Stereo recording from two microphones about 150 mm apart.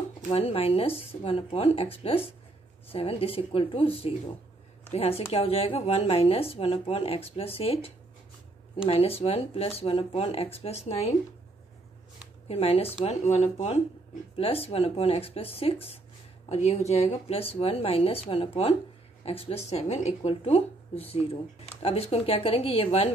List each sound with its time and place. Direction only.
0.3 s a woman's voice: 40° left (ahead or behind)
12.4 s a woman's voice: 40° left (ahead or behind)